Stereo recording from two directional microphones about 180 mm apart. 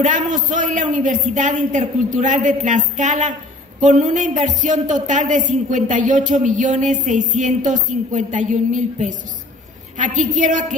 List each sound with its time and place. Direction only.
0.0 s speech: 45° right (ahead or behind)